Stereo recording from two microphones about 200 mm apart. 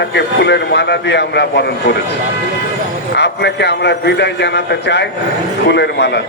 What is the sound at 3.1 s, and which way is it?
A man's voice, 60° left (ahead or behind).